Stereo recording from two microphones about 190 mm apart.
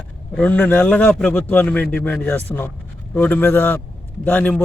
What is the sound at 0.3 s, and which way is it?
Speech, 10° left (ahead or behind).